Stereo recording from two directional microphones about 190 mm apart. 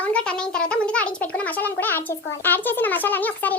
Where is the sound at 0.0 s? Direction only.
5° left (ahead or behind).